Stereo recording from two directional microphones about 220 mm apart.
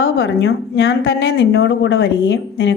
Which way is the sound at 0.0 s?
60° left (ahead or behind).